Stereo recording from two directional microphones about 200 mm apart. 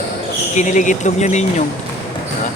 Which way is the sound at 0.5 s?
40° left (ahead or behind).